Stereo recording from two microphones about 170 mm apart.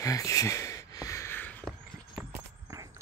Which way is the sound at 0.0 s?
20° left (ahead or behind).